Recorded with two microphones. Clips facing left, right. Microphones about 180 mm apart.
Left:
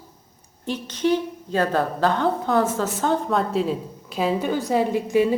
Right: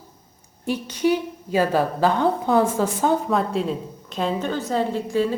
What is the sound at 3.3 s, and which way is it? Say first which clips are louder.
A woman's voice: even; centre (ahead or behind).